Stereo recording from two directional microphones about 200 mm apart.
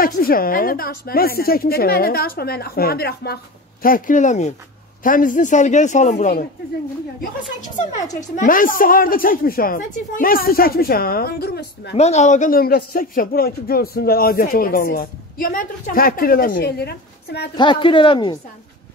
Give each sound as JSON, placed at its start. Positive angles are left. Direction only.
{"t": 0.0, "sound": "a man's voice", "side_deg": 45}
{"t": 11.9, "sound": "a man's voice", "side_deg": 35}
{"t": 17.6, "sound": "a woman's voice", "side_deg": 25}